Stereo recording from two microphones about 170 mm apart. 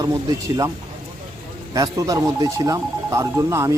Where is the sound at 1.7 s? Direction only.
20° right (ahead or behind).